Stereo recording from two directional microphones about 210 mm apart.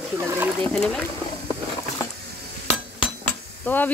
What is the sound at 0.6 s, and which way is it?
Speech, 5° left (ahead or behind).